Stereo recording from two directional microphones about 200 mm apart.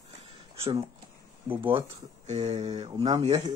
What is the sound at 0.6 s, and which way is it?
Speech, 30° right (ahead or behind).